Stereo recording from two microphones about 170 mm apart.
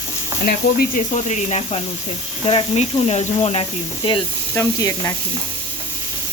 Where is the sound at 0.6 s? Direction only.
70° left (ahead or behind).